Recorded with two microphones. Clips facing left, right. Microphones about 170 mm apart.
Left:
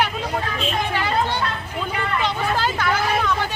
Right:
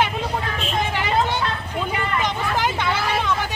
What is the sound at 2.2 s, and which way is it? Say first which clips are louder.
Vehicle: left 1 dB; 15° right (ahead or behind).